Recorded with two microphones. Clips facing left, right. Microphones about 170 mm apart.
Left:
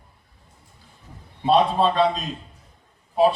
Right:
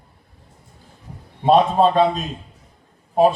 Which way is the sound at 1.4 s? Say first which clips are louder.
Right 4 dB; 50° right (ahead or behind).